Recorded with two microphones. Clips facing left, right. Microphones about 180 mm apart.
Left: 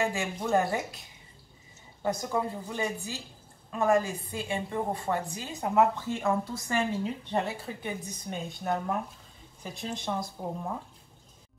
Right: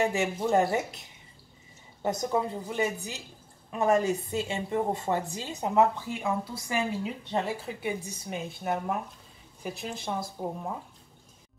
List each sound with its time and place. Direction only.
0.0 s a woman's voice: 20° right (ahead or behind)
2.0 s a woman's voice: 20° right (ahead or behind)